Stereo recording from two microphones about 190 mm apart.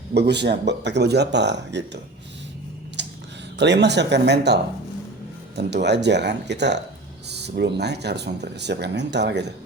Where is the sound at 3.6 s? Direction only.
65° right (ahead or behind).